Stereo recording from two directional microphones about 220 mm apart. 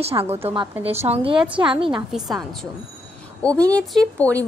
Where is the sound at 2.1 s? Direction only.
Centre (ahead or behind).